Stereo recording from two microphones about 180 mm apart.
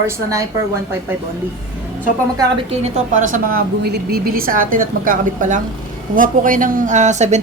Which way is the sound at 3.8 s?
60° right (ahead or behind).